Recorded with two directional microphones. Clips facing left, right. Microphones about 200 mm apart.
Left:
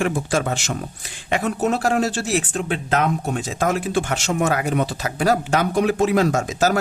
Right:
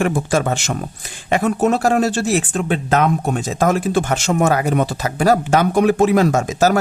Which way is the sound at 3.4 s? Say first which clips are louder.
Right 5 dB; 45° right (ahead or behind).